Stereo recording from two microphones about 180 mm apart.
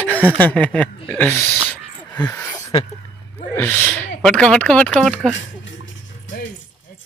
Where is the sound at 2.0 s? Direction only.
10° left (ahead or behind).